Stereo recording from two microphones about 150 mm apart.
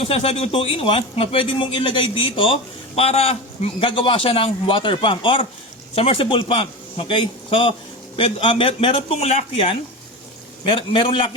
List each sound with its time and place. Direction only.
0.0 s a man's voice: 40° left (ahead or behind)